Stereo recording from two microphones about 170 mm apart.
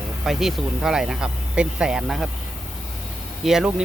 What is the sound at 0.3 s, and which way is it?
Speech, centre (ahead or behind).